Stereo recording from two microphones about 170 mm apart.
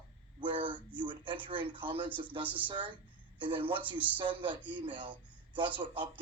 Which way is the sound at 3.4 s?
30° right (ahead or behind).